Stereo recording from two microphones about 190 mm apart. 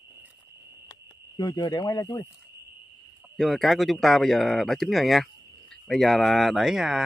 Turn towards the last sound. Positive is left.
turn(degrees=0)  # may be behind; listen again after turning